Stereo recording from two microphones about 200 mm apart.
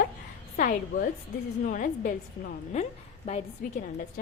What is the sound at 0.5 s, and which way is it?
A woman's voice, 45° left (ahead or behind).